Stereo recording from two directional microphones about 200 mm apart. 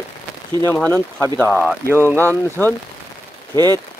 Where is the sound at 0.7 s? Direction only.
10° left (ahead or behind).